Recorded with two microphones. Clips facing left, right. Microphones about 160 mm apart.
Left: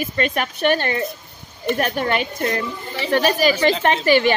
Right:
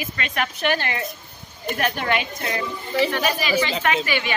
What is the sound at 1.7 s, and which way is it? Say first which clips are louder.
Speech: left 2 dB; 40° left (ahead or behind).